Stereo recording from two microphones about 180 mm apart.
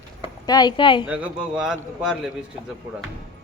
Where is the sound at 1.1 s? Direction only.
5° right (ahead or behind).